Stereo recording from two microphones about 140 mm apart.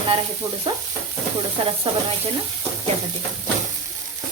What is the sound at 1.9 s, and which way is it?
Speech, 35° right (ahead or behind).